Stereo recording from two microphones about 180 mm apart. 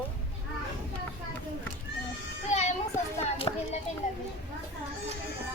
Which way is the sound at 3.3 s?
35° left (ahead or behind).